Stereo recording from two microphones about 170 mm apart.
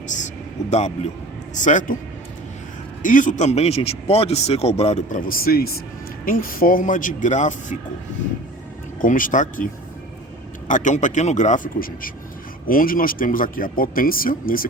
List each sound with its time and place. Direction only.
0.7 s a man's voice: 40° left (ahead or behind)
3.0 s a man's voice: 50° left (ahead or behind)
9.0 s speech: 55° left (ahead or behind)
10.7 s speech: 45° left (ahead or behind)